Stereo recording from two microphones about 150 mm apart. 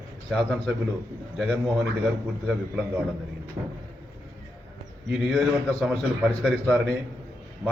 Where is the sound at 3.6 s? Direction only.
30° right (ahead or behind).